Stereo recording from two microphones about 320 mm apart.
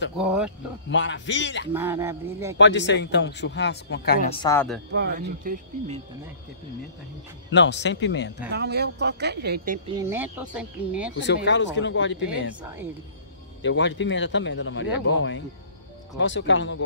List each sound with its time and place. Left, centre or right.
0.2 s speech: centre
0.8 s speech: left
1.7 s speech: centre
2.6 s speech: left
4.4 s speech: centre
4.9 s speech: right
7.5 s speech: left
8.5 s speech: right
9.8 s speech: centre
11.1 s speech: left
13.6 s speech: left